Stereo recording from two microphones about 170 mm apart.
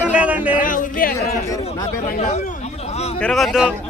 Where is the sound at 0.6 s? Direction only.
50° left (ahead or behind).